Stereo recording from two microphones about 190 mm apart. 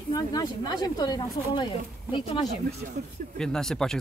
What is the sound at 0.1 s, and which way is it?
Speech, 20° left (ahead or behind).